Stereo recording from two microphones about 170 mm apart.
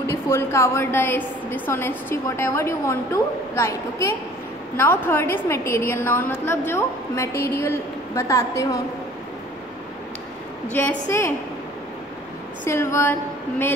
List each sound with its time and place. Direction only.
0.0 s a woman's voice: 15° left (ahead or behind)
10.7 s a woman's voice: 10° left (ahead or behind)
12.6 s a woman's voice: 15° left (ahead or behind)